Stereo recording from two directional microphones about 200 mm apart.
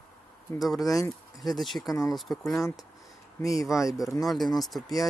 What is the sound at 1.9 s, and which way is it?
Speech, 15° left (ahead or behind).